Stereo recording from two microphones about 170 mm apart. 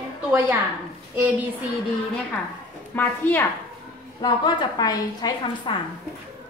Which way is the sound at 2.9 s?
10° left (ahead or behind).